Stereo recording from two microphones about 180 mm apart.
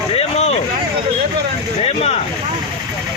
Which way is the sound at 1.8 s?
35° left (ahead or behind).